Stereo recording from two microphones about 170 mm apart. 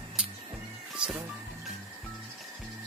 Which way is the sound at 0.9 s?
5° right (ahead or behind).